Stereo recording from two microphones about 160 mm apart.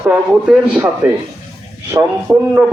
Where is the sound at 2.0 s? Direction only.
20° right (ahead or behind).